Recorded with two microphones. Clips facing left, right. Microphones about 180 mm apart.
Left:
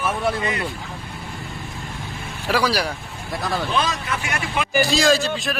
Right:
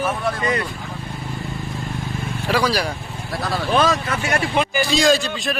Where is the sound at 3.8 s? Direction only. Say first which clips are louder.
Right 5 dB; 45° right (ahead or behind).